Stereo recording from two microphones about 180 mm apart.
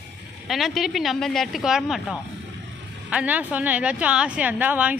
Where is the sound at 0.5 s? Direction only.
Centre (ahead or behind).